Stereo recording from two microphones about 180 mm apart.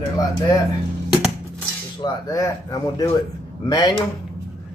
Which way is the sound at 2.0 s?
20° left (ahead or behind).